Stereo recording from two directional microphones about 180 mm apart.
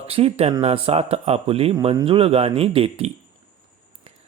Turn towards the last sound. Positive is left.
turn(degrees=-30)  # may be behind; listen again after turning